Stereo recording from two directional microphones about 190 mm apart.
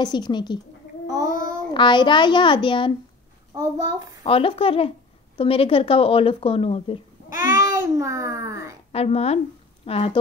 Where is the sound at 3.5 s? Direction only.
20° right (ahead or behind).